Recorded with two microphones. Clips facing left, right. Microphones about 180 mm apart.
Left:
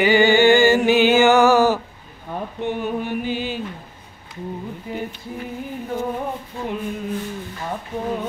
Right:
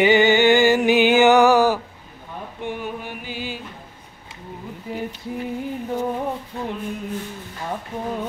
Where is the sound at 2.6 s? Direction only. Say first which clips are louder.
Left 5 dB; 10° right (ahead or behind).